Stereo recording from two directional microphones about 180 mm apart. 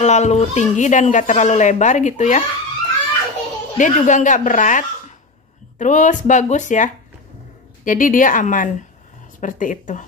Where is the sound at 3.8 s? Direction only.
45° left (ahead or behind).